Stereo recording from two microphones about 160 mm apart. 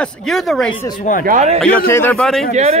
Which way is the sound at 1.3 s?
45° right (ahead or behind).